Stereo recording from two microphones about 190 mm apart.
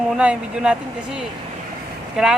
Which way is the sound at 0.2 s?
5° right (ahead or behind).